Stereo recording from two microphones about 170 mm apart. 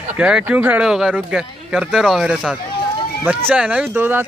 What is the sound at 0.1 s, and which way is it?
Speech, 10° right (ahead or behind).